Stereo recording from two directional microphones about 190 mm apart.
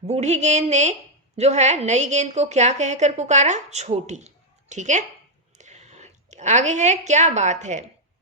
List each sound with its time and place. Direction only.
0.1 s a woman's voice: 35° right (ahead or behind)